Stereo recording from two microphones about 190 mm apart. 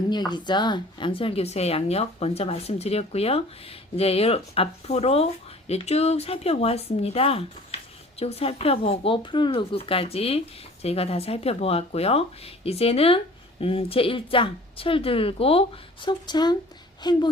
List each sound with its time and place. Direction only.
0.1 s a woman's voice: 20° left (ahead or behind)